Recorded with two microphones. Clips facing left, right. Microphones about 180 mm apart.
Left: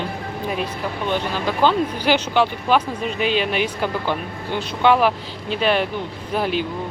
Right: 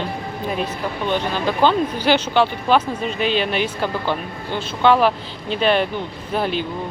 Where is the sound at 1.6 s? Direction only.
10° left (ahead or behind).